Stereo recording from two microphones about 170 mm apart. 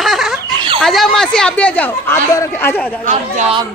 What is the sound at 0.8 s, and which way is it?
Speech, centre (ahead or behind).